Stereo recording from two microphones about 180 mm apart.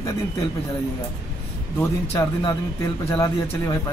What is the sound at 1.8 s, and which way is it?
Speech, 15° left (ahead or behind).